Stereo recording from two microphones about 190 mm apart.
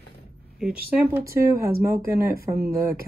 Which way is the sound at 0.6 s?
5° right (ahead or behind).